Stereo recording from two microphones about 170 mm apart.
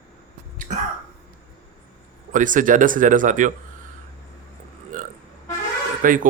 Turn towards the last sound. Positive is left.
turn(degrees=-50)  # may be behind; listen again after turning